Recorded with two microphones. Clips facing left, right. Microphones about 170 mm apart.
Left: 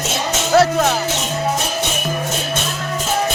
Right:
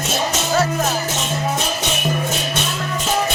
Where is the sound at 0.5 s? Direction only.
65° left (ahead or behind).